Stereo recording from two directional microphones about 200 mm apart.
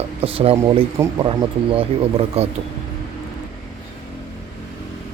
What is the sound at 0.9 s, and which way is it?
Speech, 15° right (ahead or behind).